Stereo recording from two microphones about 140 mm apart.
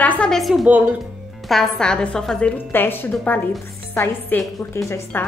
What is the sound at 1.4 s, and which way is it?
A woman's voice, centre (ahead or behind).